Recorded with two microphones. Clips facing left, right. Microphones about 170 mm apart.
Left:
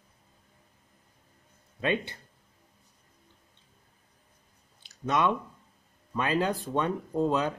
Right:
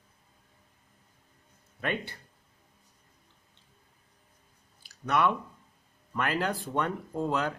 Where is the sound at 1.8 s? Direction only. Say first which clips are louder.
Left 4 dB; 20° left (ahead or behind).